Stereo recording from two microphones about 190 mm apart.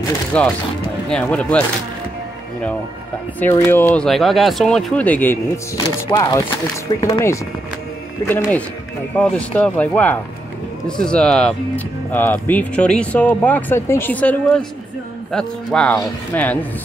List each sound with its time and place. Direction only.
0.3 s speech: 5° left (ahead or behind)
3.3 s speech: 10° left (ahead or behind)
8.3 s speech: 10° left (ahead or behind)